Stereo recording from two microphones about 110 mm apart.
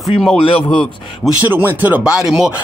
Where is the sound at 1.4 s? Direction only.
20° right (ahead or behind).